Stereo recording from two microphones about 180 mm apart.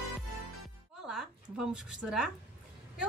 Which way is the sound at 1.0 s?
Centre (ahead or behind).